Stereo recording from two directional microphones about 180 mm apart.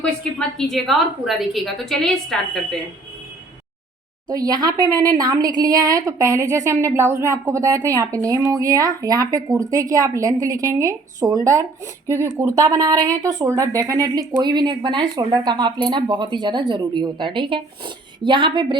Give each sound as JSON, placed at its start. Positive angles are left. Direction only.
{"t": 0.0, "sound": "a woman's voice", "side_deg": 5}
{"t": 4.3, "sound": "speech", "side_deg": -20}